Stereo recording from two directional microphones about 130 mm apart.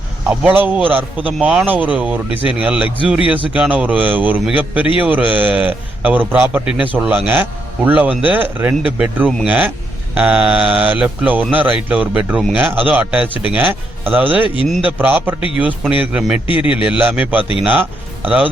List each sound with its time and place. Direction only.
0.3 s a man's voice: 10° right (ahead or behind)
14.4 s a man's voice: 40° left (ahead or behind)
14.8 s a man's voice: 15° right (ahead or behind)